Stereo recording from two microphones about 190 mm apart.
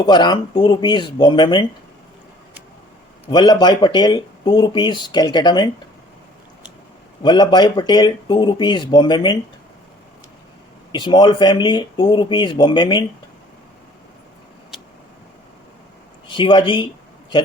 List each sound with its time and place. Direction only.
0.0 s speech: 25° left (ahead or behind)
3.2 s speech: 20° left (ahead or behind)
7.2 s speech: 25° left (ahead or behind)
10.9 s speech: 25° left (ahead or behind)
16.2 s speech: 25° left (ahead or behind)